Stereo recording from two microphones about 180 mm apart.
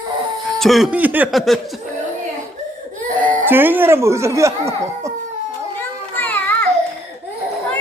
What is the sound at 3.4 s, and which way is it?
Speech, 10° right (ahead or behind).